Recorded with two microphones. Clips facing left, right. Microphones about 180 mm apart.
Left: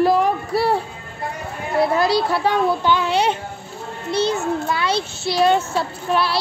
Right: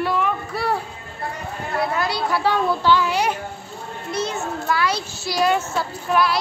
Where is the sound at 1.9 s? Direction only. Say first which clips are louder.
Left 5 dB; 35° left (ahead or behind).